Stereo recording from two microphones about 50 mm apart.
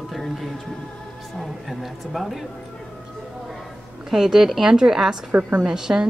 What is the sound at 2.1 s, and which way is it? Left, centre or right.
Speech, centre.